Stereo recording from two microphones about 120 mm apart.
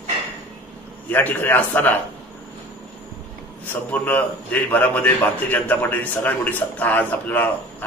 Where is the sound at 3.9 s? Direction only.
15° left (ahead or behind).